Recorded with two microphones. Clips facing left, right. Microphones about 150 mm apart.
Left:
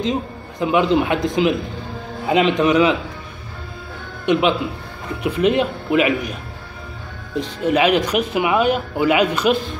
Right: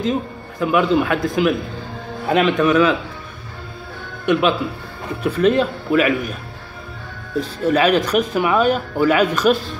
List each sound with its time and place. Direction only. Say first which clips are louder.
0.0 s a man's voice: right 1 dB; 20° left (ahead or behind)
4.3 s a man's voice: even; 20° left (ahead or behind)
7.6 s speech: even; 15° left (ahead or behind)